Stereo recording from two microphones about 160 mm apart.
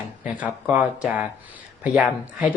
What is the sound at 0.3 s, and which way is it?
Speech, 10° right (ahead or behind).